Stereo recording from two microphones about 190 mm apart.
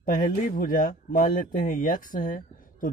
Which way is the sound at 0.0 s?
45° left (ahead or behind).